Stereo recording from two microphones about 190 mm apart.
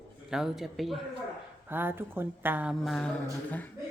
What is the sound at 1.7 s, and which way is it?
A woman's voice, 10° right (ahead or behind).